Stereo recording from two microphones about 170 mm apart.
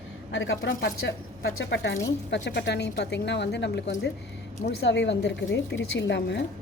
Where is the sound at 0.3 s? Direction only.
90° left.